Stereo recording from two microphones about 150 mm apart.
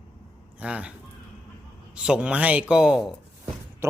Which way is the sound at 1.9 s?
5° right (ahead or behind).